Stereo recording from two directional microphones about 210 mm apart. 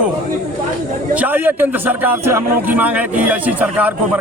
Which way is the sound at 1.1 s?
10° right (ahead or behind).